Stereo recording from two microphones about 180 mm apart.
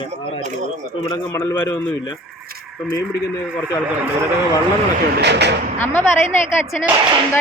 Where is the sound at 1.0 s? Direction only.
15° left (ahead or behind).